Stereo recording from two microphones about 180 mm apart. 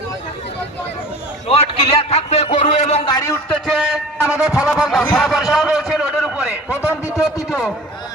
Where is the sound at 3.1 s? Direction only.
20° left (ahead or behind).